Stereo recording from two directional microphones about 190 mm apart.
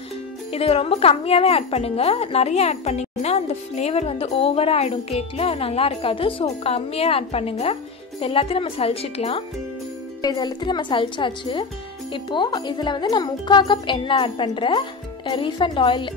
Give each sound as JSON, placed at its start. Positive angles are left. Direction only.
{"t": 0.5, "sound": "speech", "side_deg": 30}